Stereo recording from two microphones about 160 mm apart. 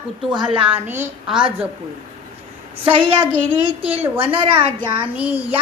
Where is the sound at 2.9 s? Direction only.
35° right (ahead or behind).